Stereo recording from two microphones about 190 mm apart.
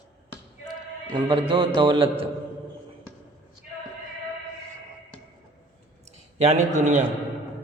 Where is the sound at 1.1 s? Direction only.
25° right (ahead or behind).